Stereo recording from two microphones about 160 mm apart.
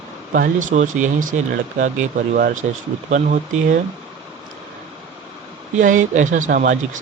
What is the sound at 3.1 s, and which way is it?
Speech, 50° right (ahead or behind).